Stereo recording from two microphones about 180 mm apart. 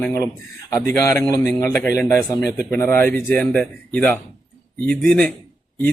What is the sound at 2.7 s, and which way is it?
Speech, 10° left (ahead or behind).